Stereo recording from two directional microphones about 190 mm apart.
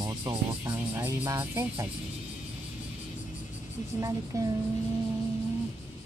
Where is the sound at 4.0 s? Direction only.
20° right (ahead or behind).